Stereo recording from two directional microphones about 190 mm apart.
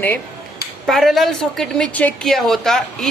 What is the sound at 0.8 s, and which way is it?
A woman's voice, centre (ahead or behind).